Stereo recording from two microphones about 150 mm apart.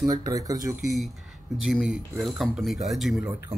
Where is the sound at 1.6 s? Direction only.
5° right (ahead or behind).